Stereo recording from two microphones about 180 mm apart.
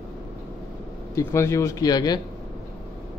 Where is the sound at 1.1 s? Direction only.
15° left (ahead or behind).